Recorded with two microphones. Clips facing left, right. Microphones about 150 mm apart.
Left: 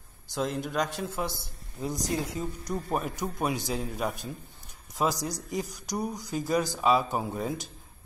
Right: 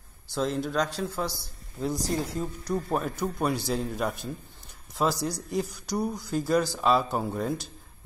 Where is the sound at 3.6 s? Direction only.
Centre (ahead or behind).